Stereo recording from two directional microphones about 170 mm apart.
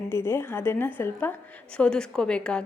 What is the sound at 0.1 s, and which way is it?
A woman's voice, 15° left (ahead or behind).